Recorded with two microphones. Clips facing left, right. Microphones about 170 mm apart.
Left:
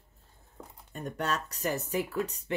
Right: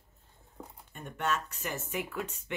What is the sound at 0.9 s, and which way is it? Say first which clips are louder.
Speech: left 1 dB; 35° left (ahead or behind).